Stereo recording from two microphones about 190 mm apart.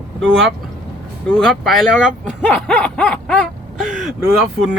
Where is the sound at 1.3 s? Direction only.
5° left (ahead or behind).